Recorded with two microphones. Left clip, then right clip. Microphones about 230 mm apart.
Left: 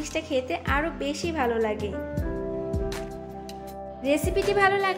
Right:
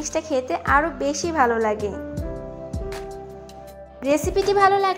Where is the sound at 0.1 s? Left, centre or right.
Centre.